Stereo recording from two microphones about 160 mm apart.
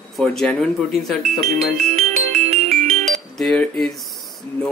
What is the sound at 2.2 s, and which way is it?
Music, 45° right (ahead or behind).